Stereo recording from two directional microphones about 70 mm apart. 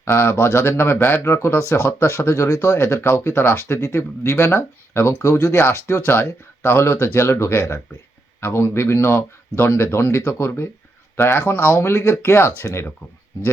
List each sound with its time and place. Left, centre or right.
0.0 s speech: left